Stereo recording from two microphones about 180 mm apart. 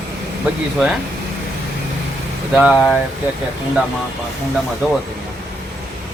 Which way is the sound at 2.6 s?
Centre (ahead or behind).